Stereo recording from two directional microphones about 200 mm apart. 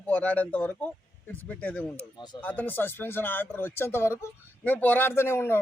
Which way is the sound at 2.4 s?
10° left (ahead or behind).